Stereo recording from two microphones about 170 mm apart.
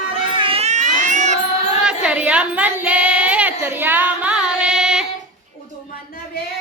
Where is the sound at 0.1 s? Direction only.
30° right (ahead or behind).